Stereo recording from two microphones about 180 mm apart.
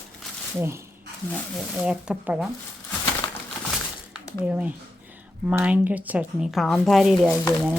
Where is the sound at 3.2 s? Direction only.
25° left (ahead or behind).